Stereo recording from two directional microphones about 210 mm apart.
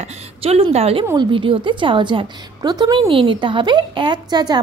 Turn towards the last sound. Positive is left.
turn(degrees=-20)  # may be behind; listen again after turning